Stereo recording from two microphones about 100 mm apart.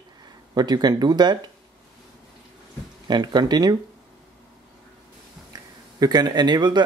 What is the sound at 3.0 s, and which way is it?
Speech, 45° right (ahead or behind).